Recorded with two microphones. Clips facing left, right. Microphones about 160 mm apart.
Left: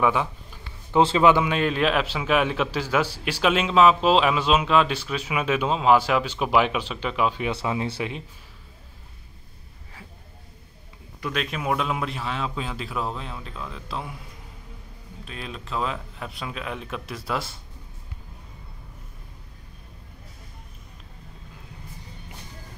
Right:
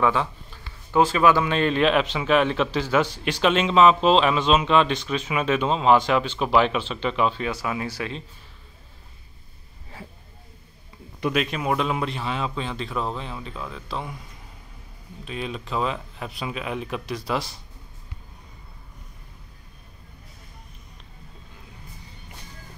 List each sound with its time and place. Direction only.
0.0 s a man's voice: 15° left (ahead or behind)
1.5 s a man's voice: 5° left (ahead or behind)
7.5 s speech: 25° left (ahead or behind)
11.3 s a man's voice: centre (ahead or behind)
15.2 s a man's voice: centre (ahead or behind)